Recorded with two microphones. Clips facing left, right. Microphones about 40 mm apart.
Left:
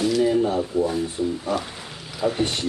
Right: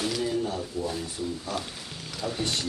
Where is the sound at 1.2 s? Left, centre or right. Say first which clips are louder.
Left 7 dB; centre.